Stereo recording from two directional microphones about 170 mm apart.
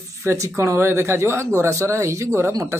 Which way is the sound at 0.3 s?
15° right (ahead or behind).